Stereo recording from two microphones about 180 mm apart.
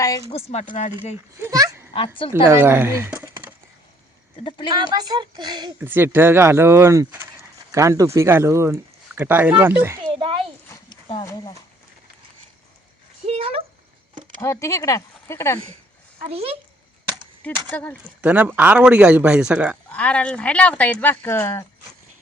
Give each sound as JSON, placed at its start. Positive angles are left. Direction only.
{"t": 0.3, "sound": "speech", "side_deg": 35}
{"t": 1.4, "sound": "speech", "side_deg": -20}
{"t": 4.4, "sound": "speech", "side_deg": 25}
{"t": 4.8, "sound": "speech", "side_deg": -25}
{"t": 5.8, "sound": "speech", "side_deg": -10}
{"t": 10.1, "sound": "a sound", "side_deg": -30}
{"t": 10.7, "sound": "horse", "side_deg": 25}
{"t": 13.2, "sound": "speech", "side_deg": -35}
{"t": 14.4, "sound": "speech", "side_deg": 15}
{"t": 16.2, "sound": "speech", "side_deg": -35}
{"t": 17.7, "sound": "speech", "side_deg": 10}
{"t": 18.2, "sound": "speech", "side_deg": -10}
{"t": 19.9, "sound": "speech", "side_deg": 5}